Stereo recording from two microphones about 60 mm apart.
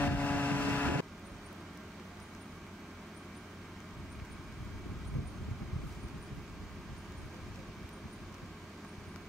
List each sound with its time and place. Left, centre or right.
0.0 s vehicle: left